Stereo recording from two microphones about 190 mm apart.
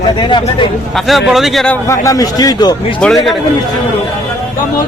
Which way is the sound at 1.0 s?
Centre (ahead or behind).